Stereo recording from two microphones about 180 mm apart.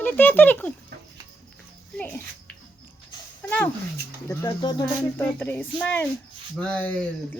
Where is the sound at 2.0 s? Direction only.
5° left (ahead or behind).